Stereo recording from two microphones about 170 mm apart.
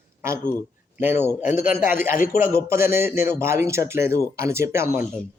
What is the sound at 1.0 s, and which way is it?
A man's voice, 10° right (ahead or behind).